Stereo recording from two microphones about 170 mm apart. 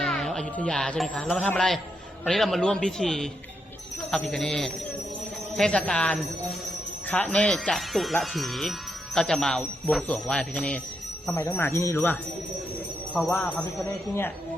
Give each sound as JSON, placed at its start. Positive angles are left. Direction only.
{"t": 0.0, "sound": "speech", "side_deg": 0}
{"t": 13.1, "sound": "speech", "side_deg": 5}